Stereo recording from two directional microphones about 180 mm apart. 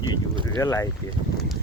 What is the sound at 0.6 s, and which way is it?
Speech, 15° left (ahead or behind).